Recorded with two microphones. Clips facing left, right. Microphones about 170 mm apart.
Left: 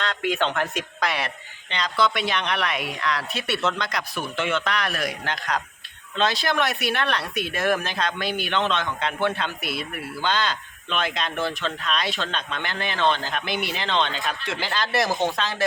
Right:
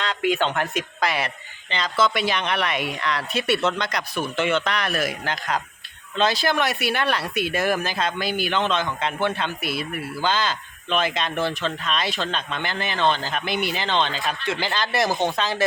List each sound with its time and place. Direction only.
0.0 s speech: centre (ahead or behind)